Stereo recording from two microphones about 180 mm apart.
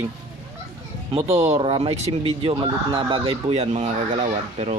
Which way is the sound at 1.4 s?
35° right (ahead or behind).